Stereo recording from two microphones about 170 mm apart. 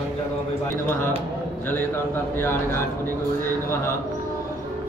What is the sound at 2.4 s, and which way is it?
Speech, 15° left (ahead or behind).